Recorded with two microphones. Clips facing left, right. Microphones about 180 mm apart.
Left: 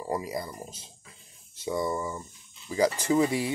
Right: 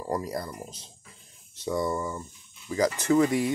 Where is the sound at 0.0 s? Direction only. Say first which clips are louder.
Right 1 dB; 5° left (ahead or behind).